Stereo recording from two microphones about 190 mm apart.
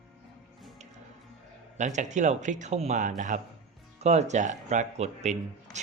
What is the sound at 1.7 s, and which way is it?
Speech, 40° right (ahead or behind).